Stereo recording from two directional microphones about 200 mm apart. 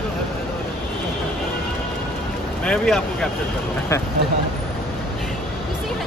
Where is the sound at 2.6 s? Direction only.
5° left (ahead or behind).